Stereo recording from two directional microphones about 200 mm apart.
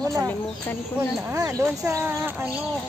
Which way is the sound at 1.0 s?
10° right (ahead or behind).